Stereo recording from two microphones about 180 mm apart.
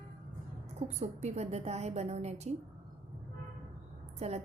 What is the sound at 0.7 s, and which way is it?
A woman's voice, 40° right (ahead or behind).